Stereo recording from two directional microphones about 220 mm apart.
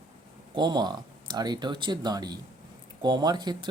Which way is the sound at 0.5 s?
20° right (ahead or behind).